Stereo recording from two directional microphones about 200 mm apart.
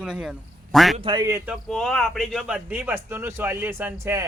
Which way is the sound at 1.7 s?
Centre (ahead or behind).